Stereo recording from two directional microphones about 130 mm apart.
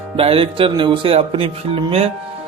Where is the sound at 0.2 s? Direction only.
45° right (ahead or behind).